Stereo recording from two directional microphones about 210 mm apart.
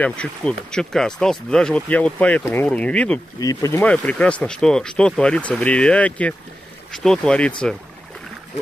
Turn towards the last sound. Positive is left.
turn(degrees=5)  # may be behind; listen again after turning